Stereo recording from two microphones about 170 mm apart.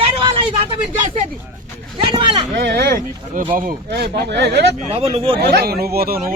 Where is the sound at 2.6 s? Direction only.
70° right (ahead or behind).